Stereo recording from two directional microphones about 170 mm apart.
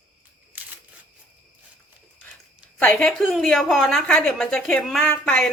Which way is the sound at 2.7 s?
5° left (ahead or behind).